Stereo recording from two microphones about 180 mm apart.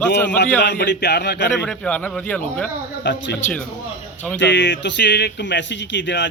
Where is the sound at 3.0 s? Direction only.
70° left (ahead or behind).